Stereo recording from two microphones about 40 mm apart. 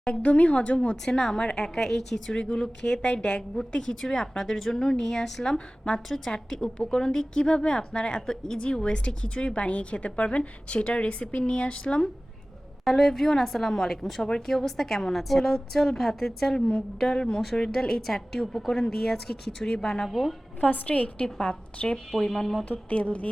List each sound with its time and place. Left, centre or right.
0.0 s a woman's voice: left
1.0 s a woman's voice: centre
12.8 s a woman's voice: centre
14.3 s a woman's voice: centre
17.2 s a woman's voice: left
17.6 s a woman's voice: centre
20.1 s a woman's voice: centre
20.7 s a woman's voice: left
22.4 s a woman's voice: centre
22.9 s a woman's voice: left